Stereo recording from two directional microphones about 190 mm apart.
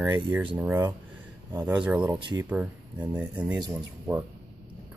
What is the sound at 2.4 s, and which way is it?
Speech, 5° right (ahead or behind).